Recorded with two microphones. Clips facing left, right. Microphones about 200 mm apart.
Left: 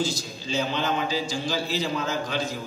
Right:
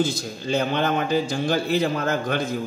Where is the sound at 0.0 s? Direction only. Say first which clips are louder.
Right 4 dB; 55° right (ahead or behind).